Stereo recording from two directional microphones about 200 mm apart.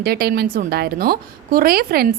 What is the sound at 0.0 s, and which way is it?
A woman's voice, 50° right (ahead or behind).